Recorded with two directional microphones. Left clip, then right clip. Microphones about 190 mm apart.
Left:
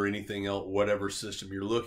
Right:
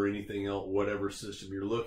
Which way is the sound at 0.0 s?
30° left (ahead or behind).